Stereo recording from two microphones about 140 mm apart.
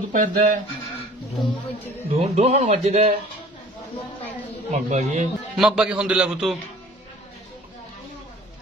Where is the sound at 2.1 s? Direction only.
50° right (ahead or behind).